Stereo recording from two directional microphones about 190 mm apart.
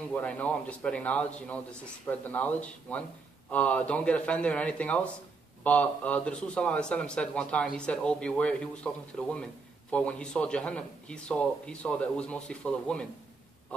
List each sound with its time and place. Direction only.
0.1 s a man's voice: 5° left (ahead or behind)